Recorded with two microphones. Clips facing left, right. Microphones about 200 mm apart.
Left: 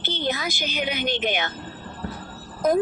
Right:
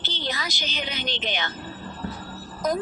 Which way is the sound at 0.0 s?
55° left (ahead or behind).